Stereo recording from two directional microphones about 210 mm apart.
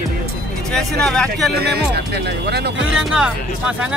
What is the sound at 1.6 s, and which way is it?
Speech, 50° right (ahead or behind).